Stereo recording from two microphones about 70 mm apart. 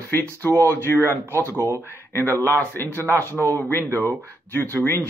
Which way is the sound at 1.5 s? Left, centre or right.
Right.